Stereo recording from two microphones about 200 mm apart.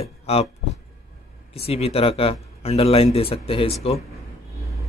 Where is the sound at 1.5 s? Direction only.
30° left (ahead or behind).